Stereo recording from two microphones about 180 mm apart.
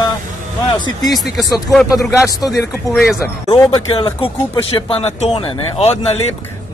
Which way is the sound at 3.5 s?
25° left (ahead or behind).